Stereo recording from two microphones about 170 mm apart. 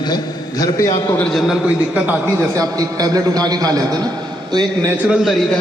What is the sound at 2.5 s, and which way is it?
A man's voice, 20° right (ahead or behind).